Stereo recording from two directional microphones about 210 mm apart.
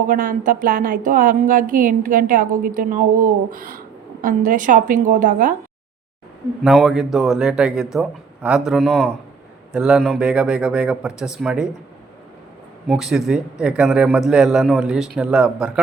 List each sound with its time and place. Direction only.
0.1 s speech: 40° right (ahead or behind)
6.6 s a man's voice: centre (ahead or behind)
12.9 s a man's voice: centre (ahead or behind)